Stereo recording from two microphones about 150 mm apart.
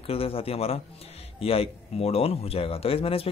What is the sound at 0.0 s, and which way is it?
Speech, 40° left (ahead or behind).